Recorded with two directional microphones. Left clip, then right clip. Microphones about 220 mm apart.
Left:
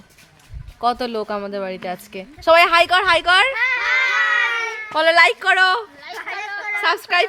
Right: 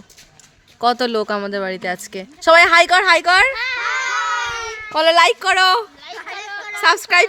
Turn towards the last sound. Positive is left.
turn(degrees=-40)  # may be behind; listen again after turning